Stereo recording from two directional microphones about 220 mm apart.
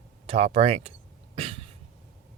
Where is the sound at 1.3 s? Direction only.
25° right (ahead or behind).